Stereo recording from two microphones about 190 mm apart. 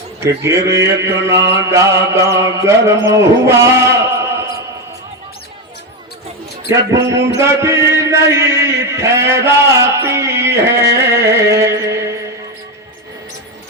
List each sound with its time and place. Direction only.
0.2 s mantra: 15° right (ahead or behind)
3.1 s a sound: 15° right (ahead or behind)
6.7 s mantra: 15° right (ahead or behind)
7.3 s chant: 15° right (ahead or behind)